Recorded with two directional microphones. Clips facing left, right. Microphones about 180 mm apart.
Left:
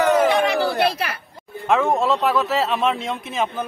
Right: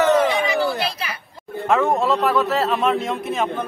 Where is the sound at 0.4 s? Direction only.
65° left (ahead or behind).